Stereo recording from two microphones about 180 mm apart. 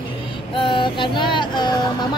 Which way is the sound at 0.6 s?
25° left (ahead or behind).